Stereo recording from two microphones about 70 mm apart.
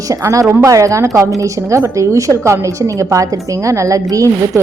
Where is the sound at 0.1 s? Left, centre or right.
Right.